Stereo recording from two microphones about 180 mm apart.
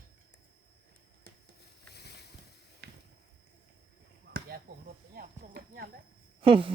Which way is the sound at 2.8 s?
55° right (ahead or behind).